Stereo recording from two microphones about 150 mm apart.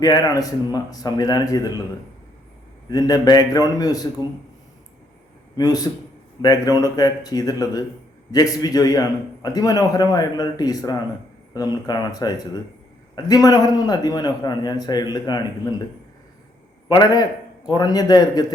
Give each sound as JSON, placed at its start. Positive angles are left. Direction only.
{"t": 0.0, "sound": "a man's voice", "side_deg": 25}
{"t": 2.9, "sound": "a man's voice", "side_deg": 25}
{"t": 5.5, "sound": "a man's voice", "side_deg": 25}
{"t": 16.9, "sound": "a man's voice", "side_deg": 30}